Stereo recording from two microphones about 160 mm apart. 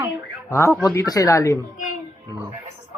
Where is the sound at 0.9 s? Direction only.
20° left (ahead or behind).